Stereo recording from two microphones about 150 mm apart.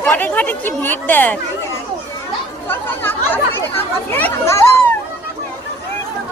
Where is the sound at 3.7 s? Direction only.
15° left (ahead or behind).